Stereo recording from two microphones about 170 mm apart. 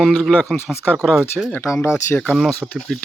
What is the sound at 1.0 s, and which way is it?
Speech, 5° right (ahead or behind).